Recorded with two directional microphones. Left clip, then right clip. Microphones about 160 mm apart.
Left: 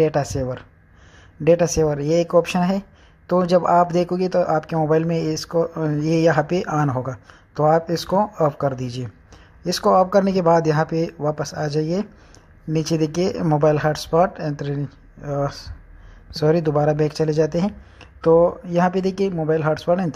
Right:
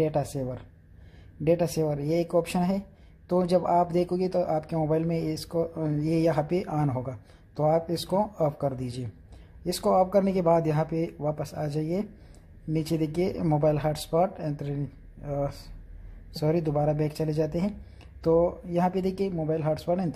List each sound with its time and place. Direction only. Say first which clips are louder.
0.0 s speech: left 8 dB; 15° left (ahead or behind)